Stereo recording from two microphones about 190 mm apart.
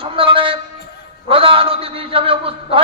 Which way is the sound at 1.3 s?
30° right (ahead or behind).